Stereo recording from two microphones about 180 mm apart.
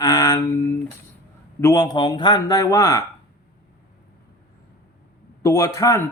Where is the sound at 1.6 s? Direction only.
20° left (ahead or behind).